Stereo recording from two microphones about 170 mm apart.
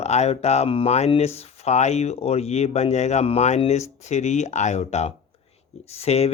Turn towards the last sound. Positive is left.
turn(degrees=40)  # may be behind; listen again after turning